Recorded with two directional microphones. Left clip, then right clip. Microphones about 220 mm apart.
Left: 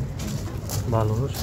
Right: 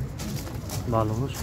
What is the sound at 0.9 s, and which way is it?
Speech, 15° right (ahead or behind).